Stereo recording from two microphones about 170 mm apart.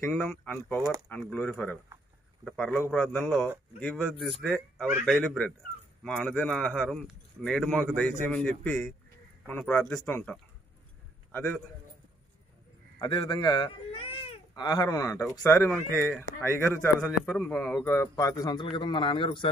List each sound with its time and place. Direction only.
0.0 s speech: 10° left (ahead or behind)
0.7 s speech: 20° right (ahead or behind)
1.3 s a man's voice: 10° left (ahead or behind)
13.0 s a man's voice: 25° left (ahead or behind)